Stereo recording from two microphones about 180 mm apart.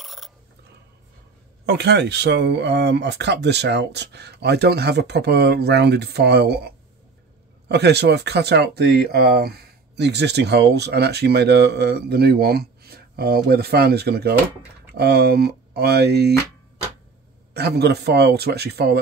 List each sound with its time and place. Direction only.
0.0 s a sound: centre (ahead or behind)
1.7 s speech: 70° right (ahead or behind)
17.6 s speech: 65° right (ahead or behind)